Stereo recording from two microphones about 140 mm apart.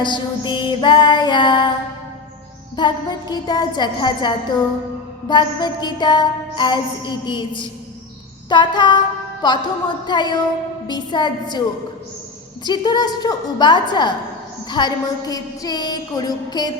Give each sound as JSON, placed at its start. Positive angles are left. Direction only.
{"t": 0.0, "sound": "music", "side_deg": 35}
{"t": 2.7, "sound": "music", "side_deg": 30}
{"t": 12.6, "sound": "music", "side_deg": 30}
{"t": 14.7, "sound": "a sound", "side_deg": 30}